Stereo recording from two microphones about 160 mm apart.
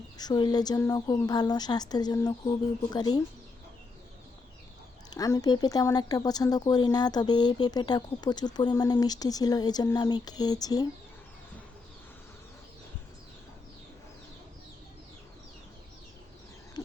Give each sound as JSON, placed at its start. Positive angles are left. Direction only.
{"t": 0.2, "sound": "speech", "side_deg": 25}
{"t": 5.1, "sound": "speech", "side_deg": 20}